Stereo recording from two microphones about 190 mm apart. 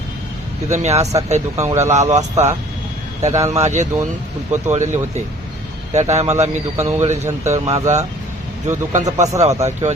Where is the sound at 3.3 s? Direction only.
15° right (ahead or behind).